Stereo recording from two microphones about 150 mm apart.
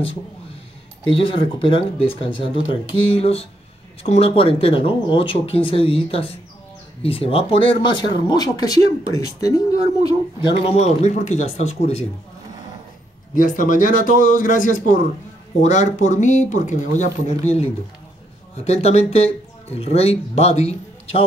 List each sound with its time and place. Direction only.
1.0 s speech: 35° left (ahead or behind)
10.6 s speech: 45° left (ahead or behind)
13.3 s speech: 60° left (ahead or behind)
18.6 s speech: 45° left (ahead or behind)